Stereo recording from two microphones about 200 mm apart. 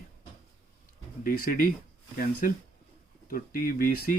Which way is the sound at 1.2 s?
45° left (ahead or behind).